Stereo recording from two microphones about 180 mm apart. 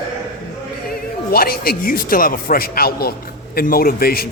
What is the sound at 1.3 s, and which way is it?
Speech, 55° left (ahead or behind).